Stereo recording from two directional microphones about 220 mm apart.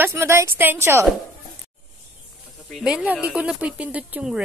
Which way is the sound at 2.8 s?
5° right (ahead or behind).